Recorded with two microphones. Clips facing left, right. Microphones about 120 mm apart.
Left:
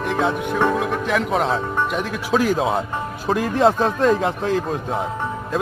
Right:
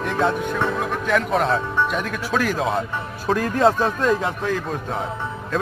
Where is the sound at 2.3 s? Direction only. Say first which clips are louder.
Left 4 dB; 20° left (ahead or behind).